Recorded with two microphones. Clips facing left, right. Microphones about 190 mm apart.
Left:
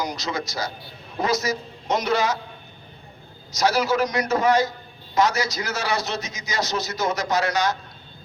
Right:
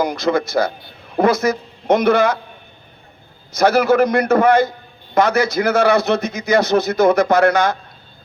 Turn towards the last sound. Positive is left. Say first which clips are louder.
# right 8 dB
turn(degrees=-55)  # may be behind; listen again after turning